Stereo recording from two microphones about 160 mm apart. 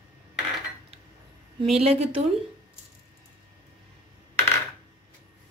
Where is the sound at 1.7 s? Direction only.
40° right (ahead or behind).